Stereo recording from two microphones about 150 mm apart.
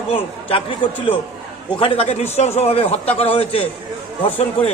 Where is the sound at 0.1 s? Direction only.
40° left (ahead or behind).